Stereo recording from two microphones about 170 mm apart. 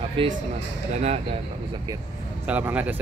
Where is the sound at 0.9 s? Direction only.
40° right (ahead or behind).